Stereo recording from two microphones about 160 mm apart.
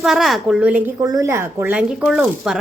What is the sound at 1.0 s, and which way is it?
Speech, 20° right (ahead or behind).